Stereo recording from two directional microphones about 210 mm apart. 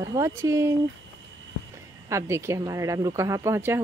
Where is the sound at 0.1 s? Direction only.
15° right (ahead or behind).